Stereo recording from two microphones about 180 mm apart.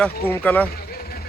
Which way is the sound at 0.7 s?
55° left (ahead or behind).